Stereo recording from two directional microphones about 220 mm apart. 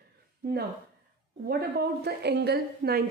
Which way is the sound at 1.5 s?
45° right (ahead or behind).